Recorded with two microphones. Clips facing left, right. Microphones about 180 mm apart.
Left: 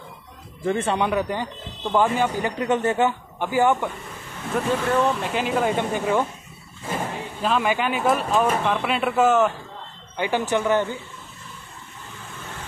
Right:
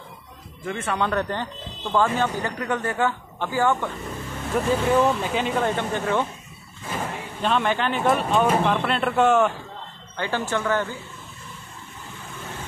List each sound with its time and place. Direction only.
0.7 s speech: 30° left (ahead or behind)
0.9 s speech: 15° left (ahead or behind)
4.6 s speech: centre (ahead or behind)
7.4 s speech: 5° left (ahead or behind)
10.1 s speech: 15° left (ahead or behind)